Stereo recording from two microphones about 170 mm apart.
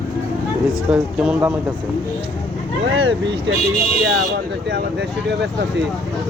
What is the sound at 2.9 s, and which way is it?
Speech, 90° right.